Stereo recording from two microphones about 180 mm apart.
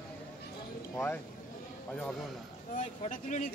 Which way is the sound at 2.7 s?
45° left (ahead or behind).